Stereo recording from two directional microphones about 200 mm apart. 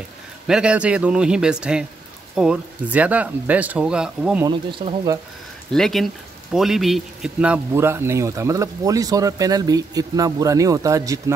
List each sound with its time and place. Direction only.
0.5 s a man's voice: 5° right (ahead or behind)
4.5 s speech: 25° right (ahead or behind)
5.7 s a man's voice: centre (ahead or behind); by 11.3 s 15° right (ahead or behind)